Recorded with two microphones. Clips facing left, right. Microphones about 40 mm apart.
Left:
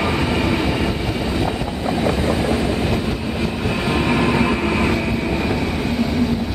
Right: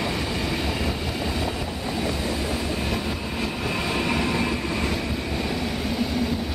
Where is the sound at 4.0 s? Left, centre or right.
Left.